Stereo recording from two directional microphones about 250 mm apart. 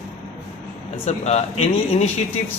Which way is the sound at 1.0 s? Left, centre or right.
Left.